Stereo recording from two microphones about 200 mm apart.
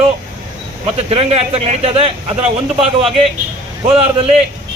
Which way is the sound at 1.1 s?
30° right (ahead or behind).